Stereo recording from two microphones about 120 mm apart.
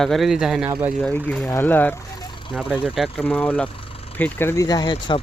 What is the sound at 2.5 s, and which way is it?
Speech, 10° right (ahead or behind).